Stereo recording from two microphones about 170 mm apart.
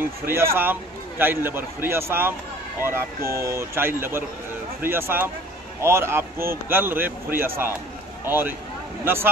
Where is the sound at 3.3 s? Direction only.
15° right (ahead or behind).